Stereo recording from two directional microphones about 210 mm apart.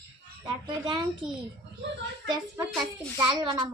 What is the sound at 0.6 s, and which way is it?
Speech, 20° right (ahead or behind).